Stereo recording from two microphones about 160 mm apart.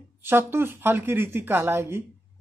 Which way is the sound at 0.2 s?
15° right (ahead or behind).